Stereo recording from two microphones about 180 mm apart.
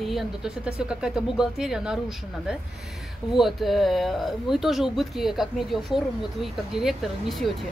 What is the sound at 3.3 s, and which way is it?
Speech, centre (ahead or behind).